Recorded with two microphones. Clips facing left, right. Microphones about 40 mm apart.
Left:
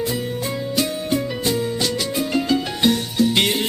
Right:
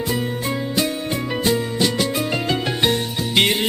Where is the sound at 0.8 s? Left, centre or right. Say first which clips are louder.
Left 3 dB; right.